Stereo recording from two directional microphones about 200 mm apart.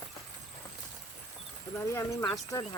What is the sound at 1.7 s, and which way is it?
Speech, 15° left (ahead or behind).